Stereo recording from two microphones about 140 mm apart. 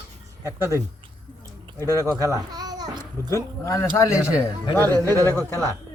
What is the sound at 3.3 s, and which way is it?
Speech, 20° left (ahead or behind).